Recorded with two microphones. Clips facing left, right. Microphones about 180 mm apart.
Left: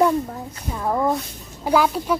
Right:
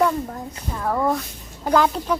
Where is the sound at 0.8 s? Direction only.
15° left (ahead or behind).